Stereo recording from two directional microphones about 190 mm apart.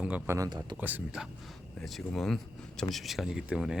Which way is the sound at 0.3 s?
20° right (ahead or behind).